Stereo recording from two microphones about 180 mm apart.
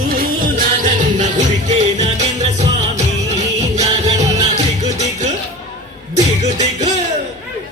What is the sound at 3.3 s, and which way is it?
Music, 40° right (ahead or behind).